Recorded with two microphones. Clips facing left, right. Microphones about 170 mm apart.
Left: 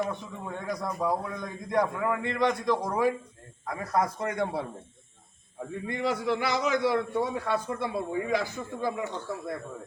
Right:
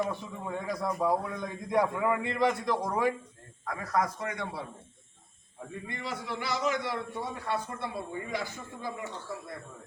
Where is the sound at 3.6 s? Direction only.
25° left (ahead or behind).